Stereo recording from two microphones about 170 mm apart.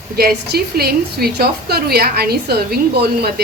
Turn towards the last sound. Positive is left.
turn(degrees=-65)  # may be behind; listen again after turning